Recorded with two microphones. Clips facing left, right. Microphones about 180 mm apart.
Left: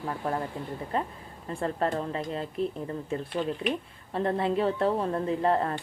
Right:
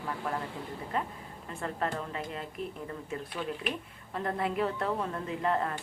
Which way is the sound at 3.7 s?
30° left (ahead or behind).